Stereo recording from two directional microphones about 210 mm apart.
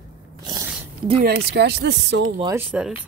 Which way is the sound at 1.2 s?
50° right (ahead or behind).